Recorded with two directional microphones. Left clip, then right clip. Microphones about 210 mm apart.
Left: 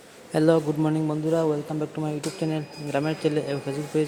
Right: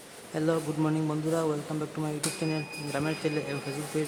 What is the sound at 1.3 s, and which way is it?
A man's voice, 10° left (ahead or behind).